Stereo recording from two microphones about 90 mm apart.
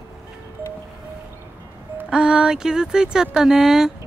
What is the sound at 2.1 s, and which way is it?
Speech, 10° right (ahead or behind).